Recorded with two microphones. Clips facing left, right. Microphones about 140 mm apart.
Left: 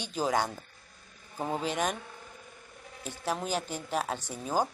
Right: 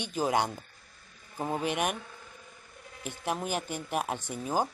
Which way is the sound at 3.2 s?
10° right (ahead or behind).